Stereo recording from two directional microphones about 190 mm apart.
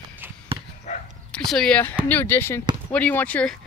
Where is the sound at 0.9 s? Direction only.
35° left (ahead or behind).